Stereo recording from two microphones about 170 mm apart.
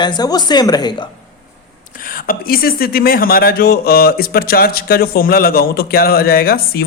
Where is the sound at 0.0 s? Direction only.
25° left (ahead or behind).